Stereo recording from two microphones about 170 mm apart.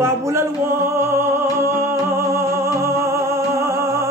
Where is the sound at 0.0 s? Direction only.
15° right (ahead or behind).